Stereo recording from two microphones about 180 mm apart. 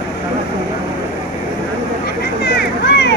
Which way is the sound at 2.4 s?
70° left (ahead or behind).